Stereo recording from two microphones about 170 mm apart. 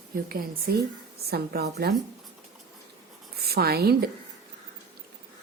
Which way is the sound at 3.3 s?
65° right (ahead or behind).